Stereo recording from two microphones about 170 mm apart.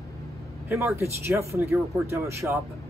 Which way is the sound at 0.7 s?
15° right (ahead or behind).